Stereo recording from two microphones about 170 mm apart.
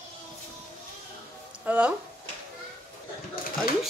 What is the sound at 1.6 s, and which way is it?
Speech, 10° right (ahead or behind).